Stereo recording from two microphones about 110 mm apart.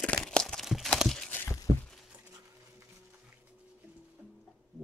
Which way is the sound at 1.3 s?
20° left (ahead or behind).